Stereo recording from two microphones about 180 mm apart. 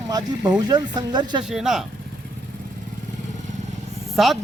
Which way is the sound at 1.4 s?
5° right (ahead or behind).